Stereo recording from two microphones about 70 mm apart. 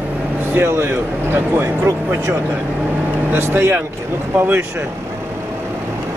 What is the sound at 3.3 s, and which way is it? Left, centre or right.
Speech, right.